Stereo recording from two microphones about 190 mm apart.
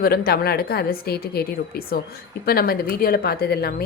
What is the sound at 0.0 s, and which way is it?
A woman's voice, 55° left (ahead or behind).